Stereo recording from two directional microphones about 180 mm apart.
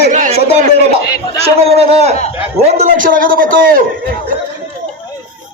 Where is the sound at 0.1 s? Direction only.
40° right (ahead or behind).